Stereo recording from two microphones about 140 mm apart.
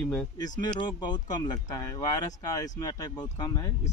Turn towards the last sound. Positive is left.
turn(degrees=25)  # may be behind; listen again after turning